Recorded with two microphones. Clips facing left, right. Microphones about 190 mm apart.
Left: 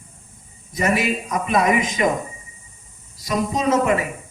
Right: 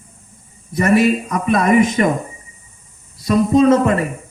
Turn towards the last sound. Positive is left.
turn(degrees=-60)  # may be behind; listen again after turning